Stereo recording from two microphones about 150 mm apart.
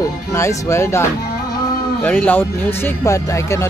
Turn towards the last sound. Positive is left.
turn(degrees=20)  # may be behind; listen again after turning